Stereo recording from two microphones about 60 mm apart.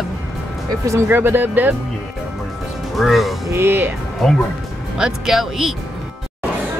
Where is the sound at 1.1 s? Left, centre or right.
Right.